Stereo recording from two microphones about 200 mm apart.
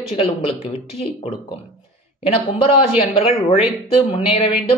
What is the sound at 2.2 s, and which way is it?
Speech, 30° left (ahead or behind).